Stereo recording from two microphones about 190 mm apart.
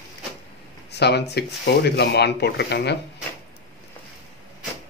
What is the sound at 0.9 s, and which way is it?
Speech, 60° left (ahead or behind).